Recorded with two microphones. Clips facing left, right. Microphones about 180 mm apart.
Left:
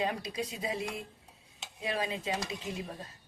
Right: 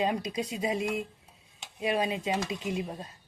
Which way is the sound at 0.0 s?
20° right (ahead or behind).